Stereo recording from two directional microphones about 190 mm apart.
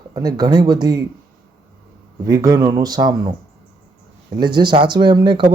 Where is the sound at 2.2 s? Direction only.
20° right (ahead or behind).